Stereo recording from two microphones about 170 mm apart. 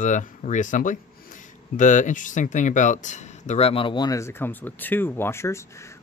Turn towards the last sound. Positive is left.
turn(degrees=15)  # may be behind; listen again after turning